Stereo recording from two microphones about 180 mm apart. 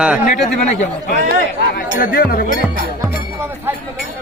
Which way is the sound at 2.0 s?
55° left (ahead or behind).